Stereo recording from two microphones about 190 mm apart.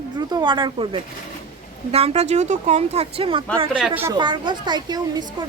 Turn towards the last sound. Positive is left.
turn(degrees=-20)  # may be behind; listen again after turning